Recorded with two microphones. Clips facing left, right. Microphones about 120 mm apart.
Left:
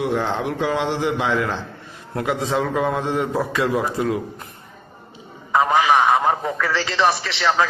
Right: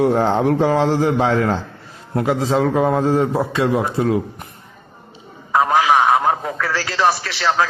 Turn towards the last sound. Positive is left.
turn(degrees=-5)  # may be behind; listen again after turning